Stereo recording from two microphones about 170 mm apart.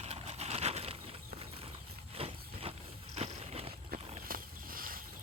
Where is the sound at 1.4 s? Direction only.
35° right (ahead or behind).